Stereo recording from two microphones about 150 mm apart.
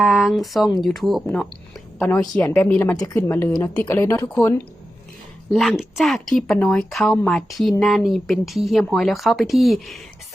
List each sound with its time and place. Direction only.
0.0 s speech: centre (ahead or behind)
2.0 s a woman's voice: 15° left (ahead or behind)
5.5 s speech: centre (ahead or behind)